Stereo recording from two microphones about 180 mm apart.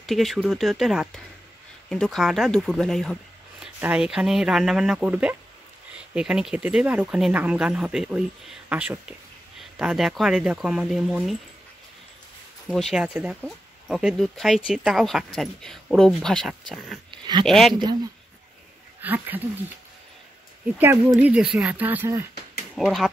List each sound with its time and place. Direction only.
0.0 s speech: centre (ahead or behind)
12.6 s speech: centre (ahead or behind)
17.1 s a sound: 25° right (ahead or behind)
17.5 s speech: centre (ahead or behind)
18.9 s speech: 10° right (ahead or behind)
20.7 s speech: 10° right (ahead or behind)
22.8 s speech: centre (ahead or behind)